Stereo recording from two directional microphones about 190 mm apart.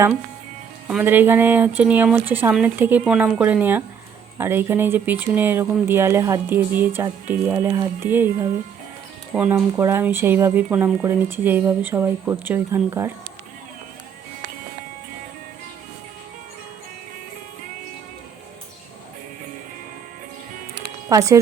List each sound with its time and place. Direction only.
0.9 s speech: 10° right (ahead or behind)
21.1 s speech: 15° right (ahead or behind)